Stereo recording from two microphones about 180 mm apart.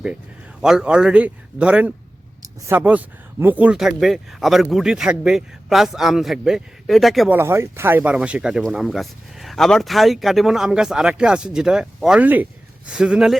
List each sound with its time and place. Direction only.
0.6 s speech: 5° right (ahead or behind)
7.3 s speech: 15° right (ahead or behind)